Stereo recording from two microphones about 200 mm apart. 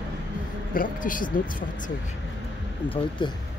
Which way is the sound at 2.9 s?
25° left (ahead or behind).